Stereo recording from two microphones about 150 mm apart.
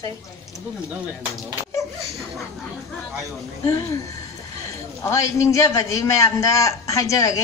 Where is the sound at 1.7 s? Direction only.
20° left (ahead or behind).